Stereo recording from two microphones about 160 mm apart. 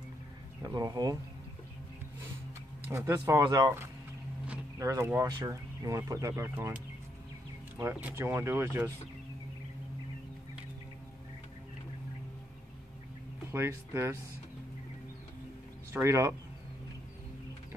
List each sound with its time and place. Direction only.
0.6 s speech: 25° right (ahead or behind)
2.9 s speech: 20° right (ahead or behind)
7.8 s speech: 15° right (ahead or behind)
13.5 s speech: 15° right (ahead or behind)
15.9 s speech: 15° right (ahead or behind)